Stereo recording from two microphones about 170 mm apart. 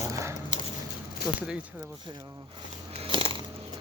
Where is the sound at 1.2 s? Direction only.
5° right (ahead or behind).